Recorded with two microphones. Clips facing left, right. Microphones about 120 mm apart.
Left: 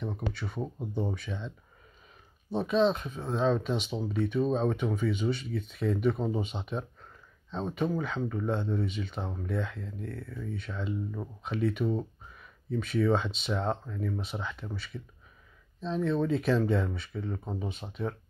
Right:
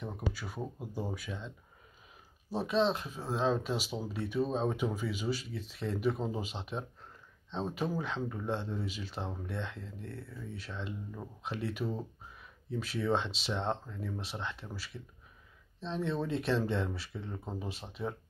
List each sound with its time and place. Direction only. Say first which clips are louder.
0.0 s speech: left 3 dB; 5° right (ahead or behind)
2.5 s speech: left 4 dB; centre (ahead or behind)